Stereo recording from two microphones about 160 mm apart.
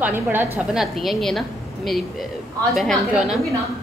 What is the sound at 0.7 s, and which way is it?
A man's voice, centre (ahead or behind).